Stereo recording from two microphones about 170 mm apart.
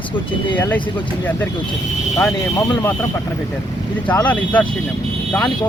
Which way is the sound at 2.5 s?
15° left (ahead or behind).